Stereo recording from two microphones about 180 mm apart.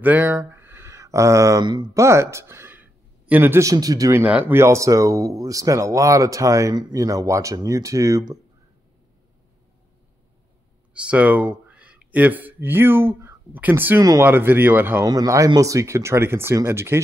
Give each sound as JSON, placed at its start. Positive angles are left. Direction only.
{"t": 0.0, "sound": "speech", "side_deg": -10}
{"t": 10.9, "sound": "speech", "side_deg": -5}